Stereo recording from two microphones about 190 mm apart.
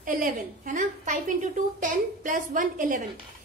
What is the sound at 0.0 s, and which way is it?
A woman's voice, 45° right (ahead or behind).